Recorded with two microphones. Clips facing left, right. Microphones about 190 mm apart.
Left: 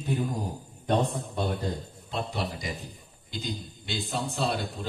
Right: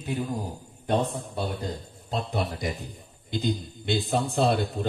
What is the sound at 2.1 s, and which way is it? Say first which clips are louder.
Speech: right 3 dB; 40° right (ahead or behind).